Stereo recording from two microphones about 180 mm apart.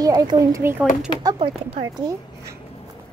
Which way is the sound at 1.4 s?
35° right (ahead or behind).